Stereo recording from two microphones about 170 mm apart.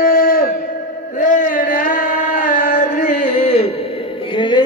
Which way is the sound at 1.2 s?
50° left (ahead or behind).